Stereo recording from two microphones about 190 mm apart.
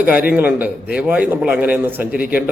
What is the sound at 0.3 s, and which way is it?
A man's voice, 10° right (ahead or behind).